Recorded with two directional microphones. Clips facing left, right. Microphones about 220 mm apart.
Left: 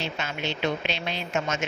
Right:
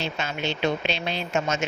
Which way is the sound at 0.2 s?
30° right (ahead or behind).